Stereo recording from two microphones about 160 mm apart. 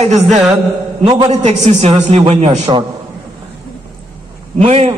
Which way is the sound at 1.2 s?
45° right (ahead or behind).